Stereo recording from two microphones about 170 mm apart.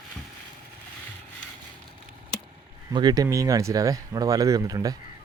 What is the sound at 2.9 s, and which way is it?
Speech, 25° right (ahead or behind).